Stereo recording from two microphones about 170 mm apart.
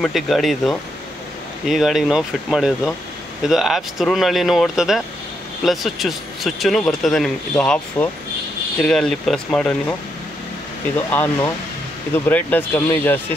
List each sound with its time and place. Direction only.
0.0 s speech: centre (ahead or behind)
11.1 s speech: 10° left (ahead or behind)